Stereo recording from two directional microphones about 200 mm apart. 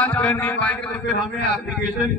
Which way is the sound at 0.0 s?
10° left (ahead or behind).